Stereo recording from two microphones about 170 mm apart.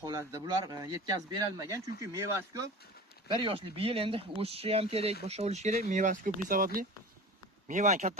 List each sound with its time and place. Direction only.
0.0 s speech: 20° right (ahead or behind)
3.3 s speech: 30° right (ahead or behind); by 6.8 s 55° right (ahead or behind)
7.7 s speech: 45° right (ahead or behind)